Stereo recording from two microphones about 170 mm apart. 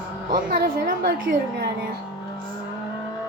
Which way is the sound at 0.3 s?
55° right (ahead or behind).